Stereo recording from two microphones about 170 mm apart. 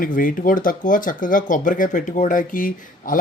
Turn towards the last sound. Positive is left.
turn(degrees=50)  # may be behind; listen again after turning